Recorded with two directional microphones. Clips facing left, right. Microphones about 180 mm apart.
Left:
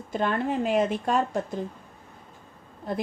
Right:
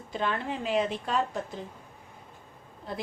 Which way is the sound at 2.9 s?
45° left (ahead or behind).